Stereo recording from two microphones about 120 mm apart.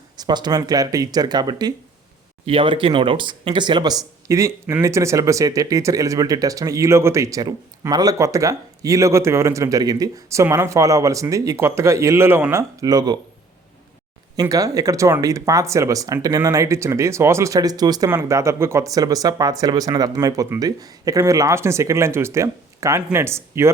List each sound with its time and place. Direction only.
0.2 s speech: 35° right (ahead or behind)
14.5 s speech: 30° right (ahead or behind)